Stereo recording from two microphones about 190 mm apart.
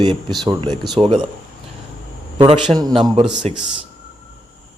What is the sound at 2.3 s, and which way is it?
Speech, 25° right (ahead or behind).